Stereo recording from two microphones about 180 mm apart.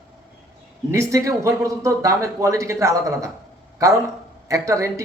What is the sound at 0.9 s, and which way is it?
A man's voice, 15° right (ahead or behind).